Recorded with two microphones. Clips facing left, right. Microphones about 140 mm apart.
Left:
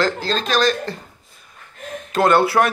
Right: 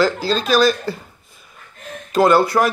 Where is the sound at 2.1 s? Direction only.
Centre (ahead or behind).